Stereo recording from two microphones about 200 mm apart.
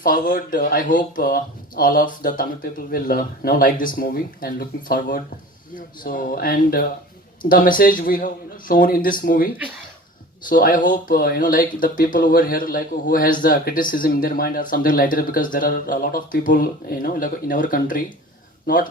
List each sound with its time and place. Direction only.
0.0 s speech: 45° left (ahead or behind)